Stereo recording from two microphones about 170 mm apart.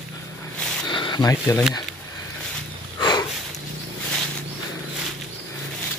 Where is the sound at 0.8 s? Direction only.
25° left (ahead or behind).